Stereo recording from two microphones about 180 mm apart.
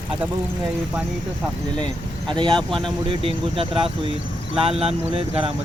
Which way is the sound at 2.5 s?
Centre (ahead or behind).